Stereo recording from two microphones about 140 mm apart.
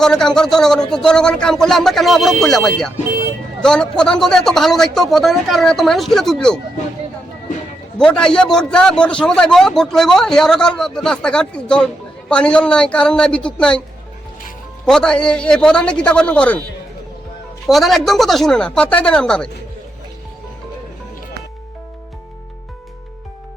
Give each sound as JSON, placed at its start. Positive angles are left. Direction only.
{"t": 0.0, "sound": "a man's voice", "side_deg": 5}
{"t": 8.2, "sound": "a man's voice", "side_deg": 5}
{"t": 14.8, "sound": "a man's voice", "side_deg": 5}
{"t": 17.7, "sound": "a man's voice", "side_deg": 0}